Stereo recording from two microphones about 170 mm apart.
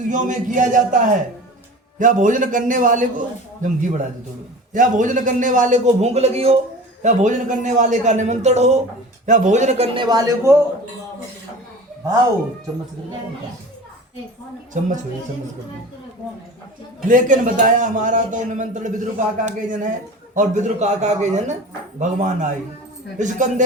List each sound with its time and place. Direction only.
0.1 s a man's voice: 50° right (ahead or behind); by 10.6 s 20° right (ahead or behind)
14.7 s a man's voice: 45° right (ahead or behind)
17.1 s a man's voice: 50° right (ahead or behind)